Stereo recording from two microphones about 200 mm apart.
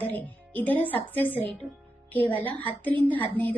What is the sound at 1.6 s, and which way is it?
Speech, 10° right (ahead or behind).